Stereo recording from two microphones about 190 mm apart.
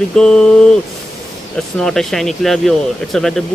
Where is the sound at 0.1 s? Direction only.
5° left (ahead or behind).